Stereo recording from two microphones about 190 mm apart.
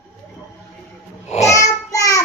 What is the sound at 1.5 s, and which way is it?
Child singing, 15° left (ahead or behind).